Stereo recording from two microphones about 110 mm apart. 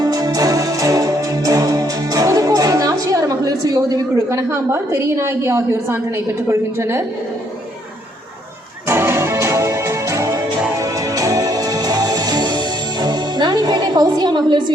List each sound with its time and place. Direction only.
0.0 s music: 35° right (ahead or behind)
8.9 s music: 25° right (ahead or behind); by 14.6 s 45° right (ahead or behind)